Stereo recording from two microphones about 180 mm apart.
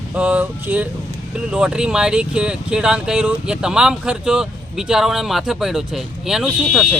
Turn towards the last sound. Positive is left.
turn(degrees=0)  # may be behind; listen again after turning